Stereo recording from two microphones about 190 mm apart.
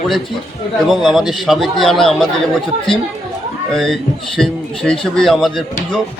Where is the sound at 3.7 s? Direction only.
Centre (ahead or behind).